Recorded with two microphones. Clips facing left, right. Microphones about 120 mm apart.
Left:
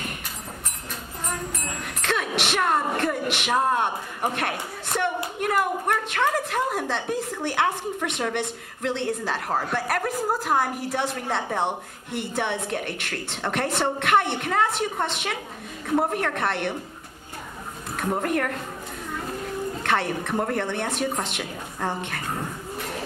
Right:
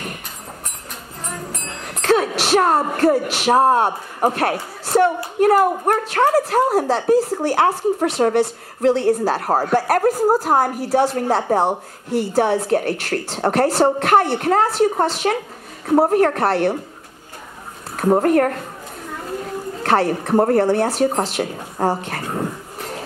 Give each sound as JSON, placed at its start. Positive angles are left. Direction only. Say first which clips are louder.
{"t": 1.5, "sound": "speech", "louder": "right 2 dB", "side_deg": -40}
{"t": 17.9, "sound": "speech", "louder": "right 10 dB", "side_deg": -45}
{"t": 19.8, "sound": "speech", "louder": "right 9 dB", "side_deg": -40}